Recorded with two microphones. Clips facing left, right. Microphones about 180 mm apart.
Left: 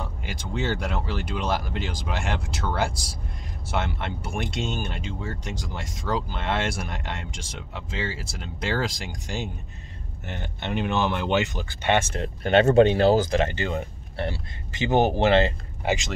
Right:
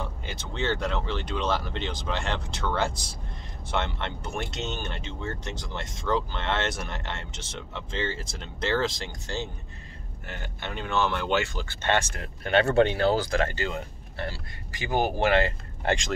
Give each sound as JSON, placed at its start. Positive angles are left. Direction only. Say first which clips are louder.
{"t": 0.2, "sound": "speech", "louder": "left 4 dB", "side_deg": 10}